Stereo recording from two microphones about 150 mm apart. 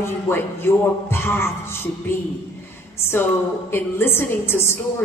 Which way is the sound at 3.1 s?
15° left (ahead or behind).